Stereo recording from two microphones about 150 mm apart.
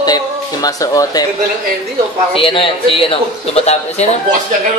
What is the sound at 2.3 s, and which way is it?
A man's voice, 35° left (ahead or behind).